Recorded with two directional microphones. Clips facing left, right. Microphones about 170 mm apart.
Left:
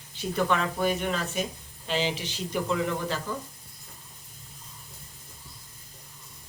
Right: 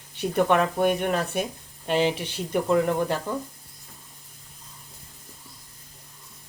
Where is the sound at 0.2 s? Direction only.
60° right (ahead or behind).